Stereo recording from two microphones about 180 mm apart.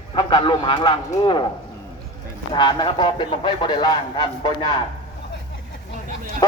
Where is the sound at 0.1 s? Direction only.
30° left (ahead or behind).